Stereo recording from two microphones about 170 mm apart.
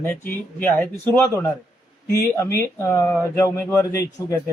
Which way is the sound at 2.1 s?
20° left (ahead or behind).